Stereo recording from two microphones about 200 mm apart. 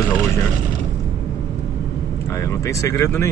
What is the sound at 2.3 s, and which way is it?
Speech, 15° left (ahead or behind).